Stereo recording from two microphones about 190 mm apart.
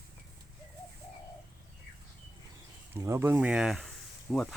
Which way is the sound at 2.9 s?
15° right (ahead or behind).